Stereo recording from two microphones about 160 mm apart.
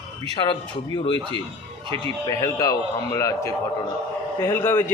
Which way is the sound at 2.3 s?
20° left (ahead or behind).